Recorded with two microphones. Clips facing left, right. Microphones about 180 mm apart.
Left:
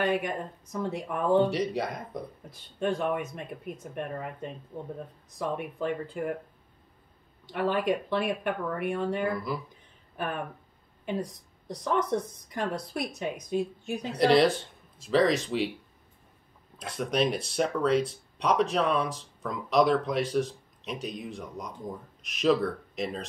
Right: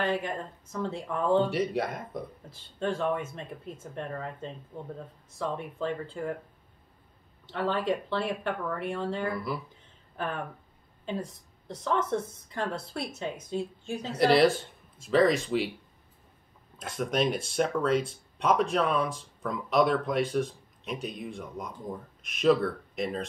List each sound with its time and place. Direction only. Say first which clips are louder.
0.0 s speech: left 2 dB; 15° left (ahead or behind)
1.5 s speech: even; centre (ahead or behind)
2.5 s speech: left 2 dB; 15° left (ahead or behind)
7.4 s speech: left 2 dB; 15° left (ahead or behind)
9.3 s speech: left 1 dB; centre (ahead or behind)
10.1 s speech: left 1 dB; 15° left (ahead or behind)
14.1 s speech: even; 5° right (ahead or behind)
16.7 s speech: even; centre (ahead or behind)